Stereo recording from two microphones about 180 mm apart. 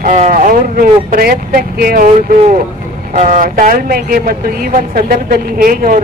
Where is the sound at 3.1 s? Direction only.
45° right (ahead or behind).